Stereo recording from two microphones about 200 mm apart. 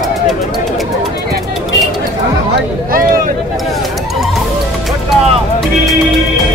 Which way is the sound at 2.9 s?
45° right (ahead or behind).